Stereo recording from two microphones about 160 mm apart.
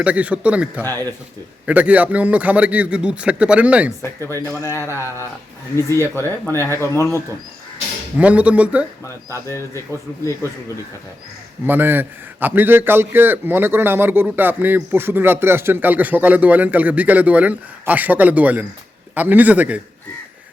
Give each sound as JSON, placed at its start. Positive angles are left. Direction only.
{"t": 0.0, "sound": "a man's voice", "side_deg": -10}
{"t": 0.8, "sound": "speech", "side_deg": 15}
{"t": 1.6, "sound": "a man's voice", "side_deg": -10}
{"t": 4.3, "sound": "speech", "side_deg": -20}
{"t": 4.9, "sound": "speech", "side_deg": 15}
{"t": 8.2, "sound": "a man's voice", "side_deg": -10}
{"t": 9.3, "sound": "speech", "side_deg": 20}
{"t": 11.6, "sound": "a man's voice", "side_deg": -10}